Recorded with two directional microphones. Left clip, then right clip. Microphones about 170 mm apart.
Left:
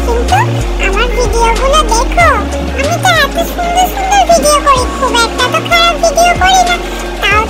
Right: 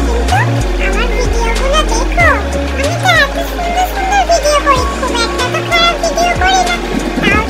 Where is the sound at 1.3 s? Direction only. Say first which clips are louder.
Left 6 dB; 25° left (ahead or behind).